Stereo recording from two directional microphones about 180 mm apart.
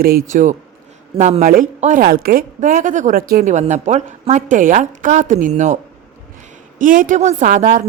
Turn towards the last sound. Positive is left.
turn(degrees=-40)  # may be behind; listen again after turning